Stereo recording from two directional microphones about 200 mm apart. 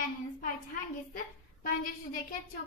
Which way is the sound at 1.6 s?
45° left (ahead or behind).